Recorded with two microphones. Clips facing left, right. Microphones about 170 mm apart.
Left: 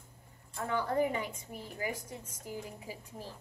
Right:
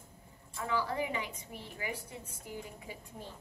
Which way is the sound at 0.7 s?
50° left (ahead or behind).